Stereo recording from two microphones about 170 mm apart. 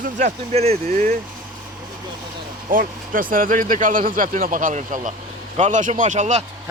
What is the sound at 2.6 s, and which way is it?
Speech, 55° right (ahead or behind).